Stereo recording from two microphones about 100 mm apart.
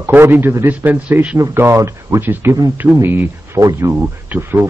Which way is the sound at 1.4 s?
30° right (ahead or behind).